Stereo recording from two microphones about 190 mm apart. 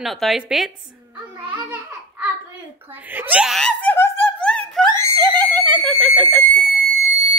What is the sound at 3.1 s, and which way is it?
Laughter, 10° right (ahead or behind).